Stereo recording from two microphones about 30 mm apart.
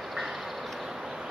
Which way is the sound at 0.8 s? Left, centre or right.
Centre.